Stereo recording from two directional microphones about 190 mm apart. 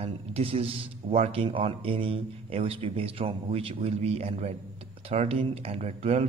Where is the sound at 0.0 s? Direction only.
30° right (ahead or behind).